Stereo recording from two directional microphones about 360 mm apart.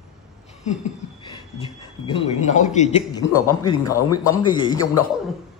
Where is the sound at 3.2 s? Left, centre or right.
Left.